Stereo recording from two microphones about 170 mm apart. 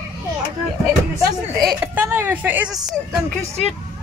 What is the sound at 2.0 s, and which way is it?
Speech, 15° right (ahead or behind).